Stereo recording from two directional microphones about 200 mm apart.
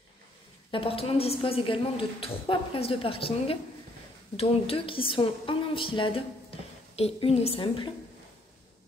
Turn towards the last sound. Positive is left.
turn(degrees=25)  # may be behind; listen again after turning